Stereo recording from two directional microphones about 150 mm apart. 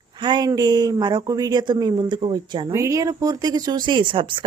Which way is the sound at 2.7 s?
20° right (ahead or behind).